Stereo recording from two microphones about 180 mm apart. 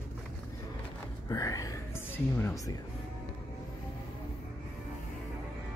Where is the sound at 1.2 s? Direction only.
20° left (ahead or behind).